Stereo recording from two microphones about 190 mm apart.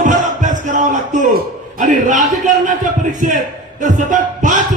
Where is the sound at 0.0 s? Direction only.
45° right (ahead or behind).